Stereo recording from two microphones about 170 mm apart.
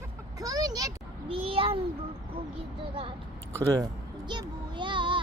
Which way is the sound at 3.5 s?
20° right (ahead or behind).